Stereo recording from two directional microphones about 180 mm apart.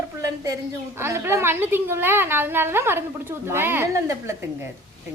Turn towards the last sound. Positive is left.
turn(degrees=-15)  # may be behind; listen again after turning